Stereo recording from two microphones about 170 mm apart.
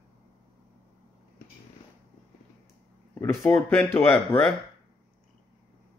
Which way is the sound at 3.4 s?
10° left (ahead or behind).